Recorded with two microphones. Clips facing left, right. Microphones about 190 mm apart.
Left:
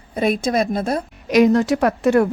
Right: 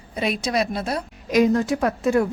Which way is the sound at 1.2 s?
70° left (ahead or behind).